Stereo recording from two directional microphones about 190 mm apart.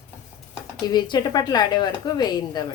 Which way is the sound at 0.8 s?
20° left (ahead or behind).